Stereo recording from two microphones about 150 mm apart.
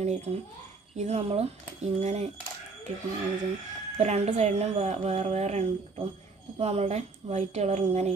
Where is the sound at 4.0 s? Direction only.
45° right (ahead or behind).